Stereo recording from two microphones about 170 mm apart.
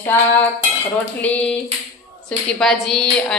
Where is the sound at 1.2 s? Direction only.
10° left (ahead or behind).